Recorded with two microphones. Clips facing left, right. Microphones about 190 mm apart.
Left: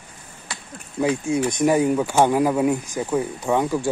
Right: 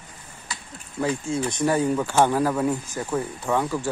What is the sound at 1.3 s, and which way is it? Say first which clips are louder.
Speech: left 4 dB; 15° left (ahead or behind).